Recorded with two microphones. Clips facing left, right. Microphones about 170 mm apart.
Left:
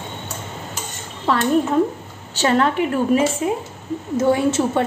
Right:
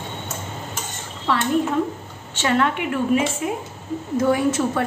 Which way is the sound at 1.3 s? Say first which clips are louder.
Left 3 dB; 40° left (ahead or behind).